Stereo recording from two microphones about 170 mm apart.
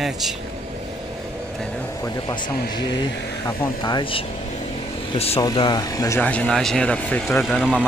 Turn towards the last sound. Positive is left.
turn(degrees=0)  # may be behind; listen again after turning